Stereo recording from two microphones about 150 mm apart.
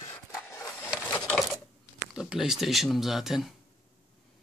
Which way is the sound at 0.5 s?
20° left (ahead or behind).